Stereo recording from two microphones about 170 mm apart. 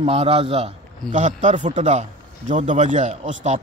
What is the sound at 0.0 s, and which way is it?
A man's voice, 35° right (ahead or behind).